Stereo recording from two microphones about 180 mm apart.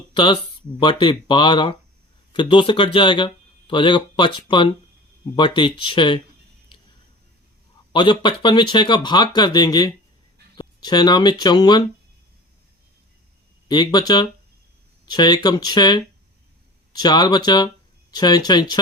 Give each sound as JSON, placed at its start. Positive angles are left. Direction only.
{"t": 0.8, "sound": "speech", "side_deg": 25}
{"t": 7.9, "sound": "speech", "side_deg": 25}
{"t": 13.7, "sound": "speech", "side_deg": 25}
{"t": 15.1, "sound": "speech", "side_deg": 25}